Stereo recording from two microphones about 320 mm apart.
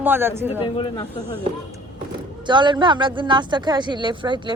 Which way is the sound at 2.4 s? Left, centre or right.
Centre.